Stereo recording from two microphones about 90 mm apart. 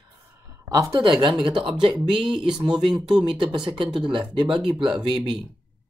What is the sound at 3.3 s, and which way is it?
Speech, 65° right (ahead or behind).